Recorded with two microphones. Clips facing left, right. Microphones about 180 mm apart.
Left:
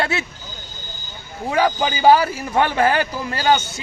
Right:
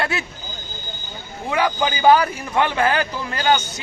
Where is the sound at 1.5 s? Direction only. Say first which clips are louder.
Left 2 dB; 30° left (ahead or behind).